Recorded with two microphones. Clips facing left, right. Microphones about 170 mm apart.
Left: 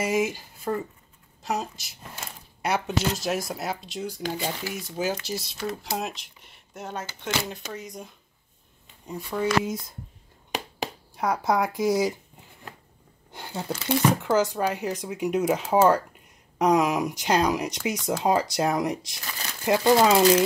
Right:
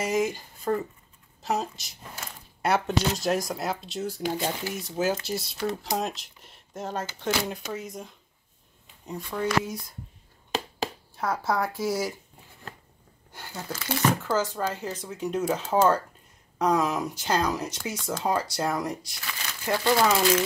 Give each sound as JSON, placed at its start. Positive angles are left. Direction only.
{"t": 0.0, "sound": "speech", "side_deg": 5}
{"t": 10.5, "sound": "a sound", "side_deg": 15}
{"t": 13.3, "sound": "speech", "side_deg": 20}